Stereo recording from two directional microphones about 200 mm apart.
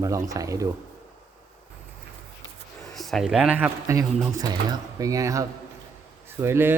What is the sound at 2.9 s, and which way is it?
Speech, centre (ahead or behind).